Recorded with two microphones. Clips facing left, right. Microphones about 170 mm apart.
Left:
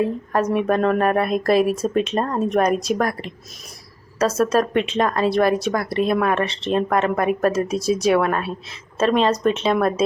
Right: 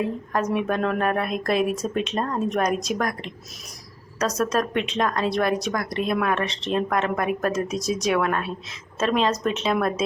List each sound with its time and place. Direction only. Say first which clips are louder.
0.3 s speech: left 5 dB; centre (ahead or behind)
4.4 s speech: left 5 dB; centre (ahead or behind)